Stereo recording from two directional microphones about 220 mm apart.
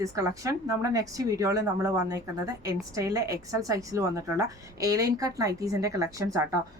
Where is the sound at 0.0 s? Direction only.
15° right (ahead or behind).